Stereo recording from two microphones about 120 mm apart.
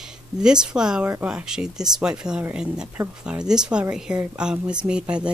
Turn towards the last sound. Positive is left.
turn(degrees=-10)  # may be behind; listen again after turning